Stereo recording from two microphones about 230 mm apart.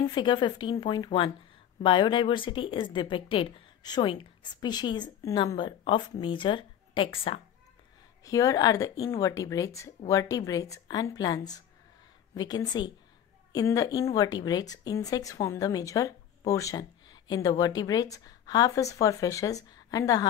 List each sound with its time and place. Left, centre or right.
0.0 s a woman's voice: centre